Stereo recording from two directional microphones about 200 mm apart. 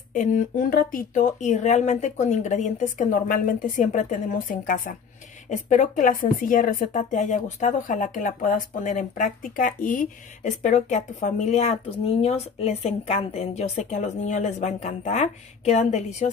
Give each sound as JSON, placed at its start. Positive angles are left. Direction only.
{"t": 0.1, "sound": "speech", "side_deg": 40}